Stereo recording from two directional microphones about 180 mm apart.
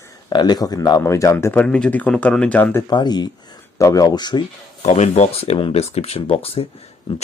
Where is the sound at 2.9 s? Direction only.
25° left (ahead or behind).